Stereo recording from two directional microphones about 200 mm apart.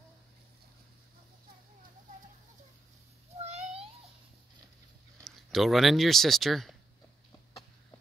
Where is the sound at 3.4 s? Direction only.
30° right (ahead or behind).